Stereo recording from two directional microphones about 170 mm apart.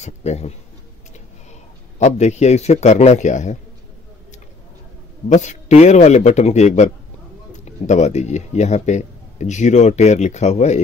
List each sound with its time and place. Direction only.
0.0 s a man's voice: 40° left (ahead or behind)
2.0 s a man's voice: 45° left (ahead or behind)
5.3 s a man's voice: 45° left (ahead or behind)